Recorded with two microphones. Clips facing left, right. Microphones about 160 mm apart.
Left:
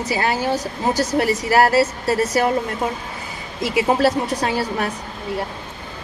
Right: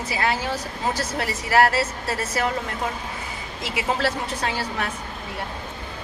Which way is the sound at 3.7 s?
30° left (ahead or behind).